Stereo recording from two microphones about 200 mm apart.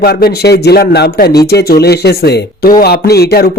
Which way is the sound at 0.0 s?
50° left (ahead or behind).